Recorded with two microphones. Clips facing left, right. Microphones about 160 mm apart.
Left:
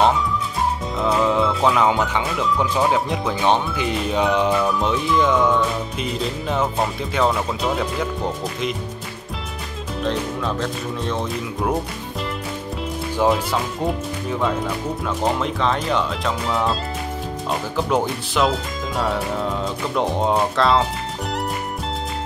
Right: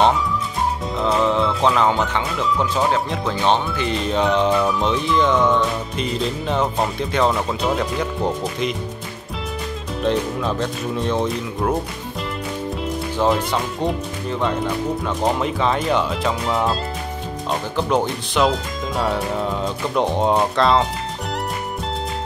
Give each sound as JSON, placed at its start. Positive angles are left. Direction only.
{"t": 1.0, "sound": "speech", "side_deg": 5}
{"t": 10.0, "sound": "speech", "side_deg": 0}
{"t": 13.2, "sound": "speech", "side_deg": 5}